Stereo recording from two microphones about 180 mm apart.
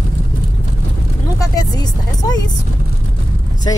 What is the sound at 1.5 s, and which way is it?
Vehicle, 20° left (ahead or behind).